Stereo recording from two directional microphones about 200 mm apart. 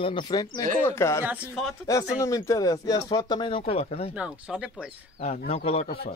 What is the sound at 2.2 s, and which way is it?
Speech, 15° left (ahead or behind).